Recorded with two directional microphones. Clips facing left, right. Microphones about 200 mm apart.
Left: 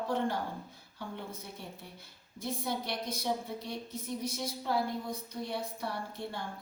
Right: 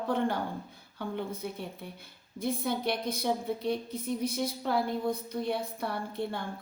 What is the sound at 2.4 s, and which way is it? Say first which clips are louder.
A woman's voice: right 5 dB; 55° right (ahead or behind).